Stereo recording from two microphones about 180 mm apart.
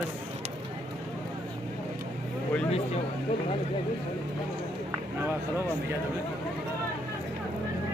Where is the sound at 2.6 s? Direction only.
35° left (ahead or behind).